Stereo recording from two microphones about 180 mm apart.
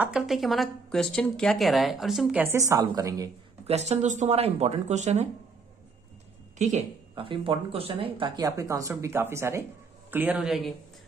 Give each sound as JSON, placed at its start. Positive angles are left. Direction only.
{"t": 0.0, "sound": "speech", "side_deg": -5}
{"t": 2.4, "sound": "a woman's voice", "side_deg": -15}
{"t": 3.6, "sound": "speech", "side_deg": -35}
{"t": 6.6, "sound": "a woman's voice", "side_deg": -40}